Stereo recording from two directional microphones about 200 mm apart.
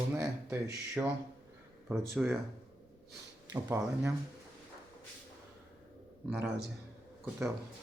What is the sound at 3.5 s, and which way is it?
Speech, 15° right (ahead or behind).